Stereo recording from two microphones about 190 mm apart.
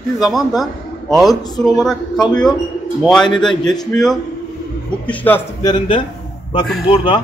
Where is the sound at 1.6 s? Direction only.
Centre (ahead or behind).